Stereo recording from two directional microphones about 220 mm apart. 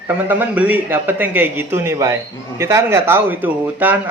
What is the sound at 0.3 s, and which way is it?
Speech, 5° right (ahead or behind).